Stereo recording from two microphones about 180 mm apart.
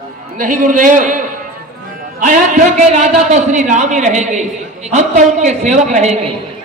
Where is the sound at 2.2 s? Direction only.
45° right (ahead or behind).